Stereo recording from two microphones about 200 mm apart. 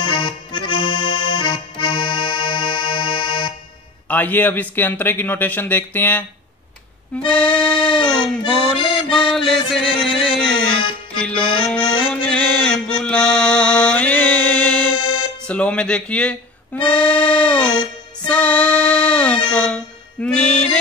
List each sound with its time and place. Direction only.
0.0 s accordion: 25° left (ahead or behind)
4.1 s a man's voice: 10° left (ahead or behind)
7.2 s accordion: 5° left (ahead or behind)
9.1 s music: centre (ahead or behind)
11.1 s accordion: 5° left (ahead or behind)
11.6 s music: 5° left (ahead or behind)